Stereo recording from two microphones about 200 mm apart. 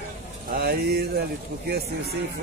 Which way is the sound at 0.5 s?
50° right (ahead or behind).